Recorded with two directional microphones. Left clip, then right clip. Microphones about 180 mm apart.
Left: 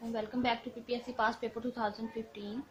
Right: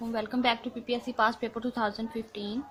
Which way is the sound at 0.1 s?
30° right (ahead or behind).